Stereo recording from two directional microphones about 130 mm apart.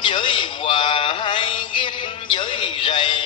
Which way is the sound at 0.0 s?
40° left (ahead or behind).